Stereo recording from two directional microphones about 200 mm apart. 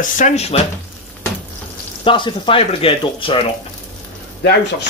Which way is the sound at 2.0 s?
25° left (ahead or behind).